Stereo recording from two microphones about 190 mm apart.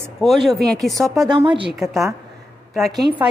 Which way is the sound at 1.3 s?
25° right (ahead or behind).